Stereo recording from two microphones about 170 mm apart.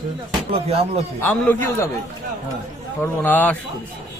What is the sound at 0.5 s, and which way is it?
Music, 35° right (ahead or behind).